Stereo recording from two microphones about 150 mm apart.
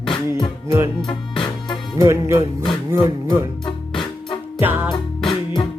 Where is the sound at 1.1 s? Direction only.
30° left (ahead or behind).